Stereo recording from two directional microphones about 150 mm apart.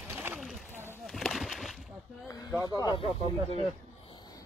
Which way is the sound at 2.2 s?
25° left (ahead or behind).